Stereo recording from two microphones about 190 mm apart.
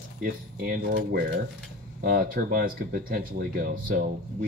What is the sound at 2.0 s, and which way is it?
Speech, 50° right (ahead or behind).